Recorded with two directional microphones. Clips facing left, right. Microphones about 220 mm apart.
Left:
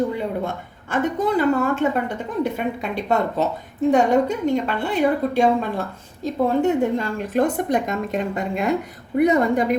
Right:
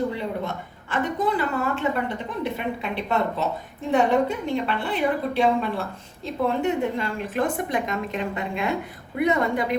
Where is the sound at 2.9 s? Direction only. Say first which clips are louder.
Left 4 dB; 45° left (ahead or behind).